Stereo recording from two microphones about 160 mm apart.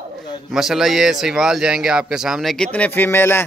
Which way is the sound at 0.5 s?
Centre (ahead or behind).